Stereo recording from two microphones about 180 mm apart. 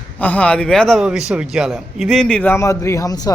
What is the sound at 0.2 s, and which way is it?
A man's voice, 10° left (ahead or behind).